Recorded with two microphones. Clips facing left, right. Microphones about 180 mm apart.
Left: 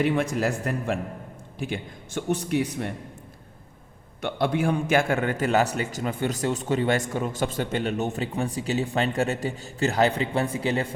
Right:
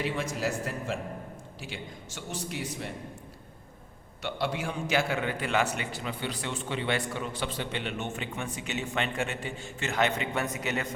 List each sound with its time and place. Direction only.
0.0 s a man's voice: 60° left (ahead or behind)
4.2 s a man's voice: 55° left (ahead or behind); by 10.8 s 30° left (ahead or behind)